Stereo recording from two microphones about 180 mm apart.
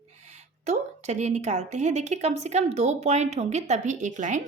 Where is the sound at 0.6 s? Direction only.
40° right (ahead or behind).